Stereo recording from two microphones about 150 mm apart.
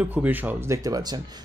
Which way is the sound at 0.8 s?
25° right (ahead or behind).